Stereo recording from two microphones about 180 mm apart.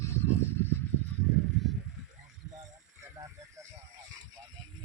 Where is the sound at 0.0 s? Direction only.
15° left (ahead or behind).